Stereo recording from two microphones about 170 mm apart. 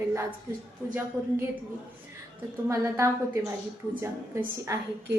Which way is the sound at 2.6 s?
15° right (ahead or behind).